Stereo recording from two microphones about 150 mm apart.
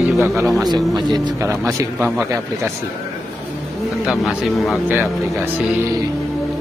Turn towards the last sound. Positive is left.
turn(degrees=0)  # may be behind; listen again after turning